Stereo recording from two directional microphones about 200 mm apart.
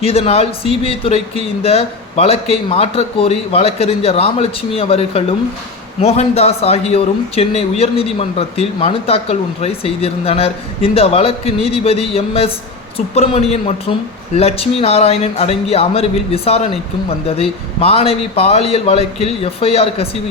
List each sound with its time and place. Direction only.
0.0 s a man's voice: 30° left (ahead or behind)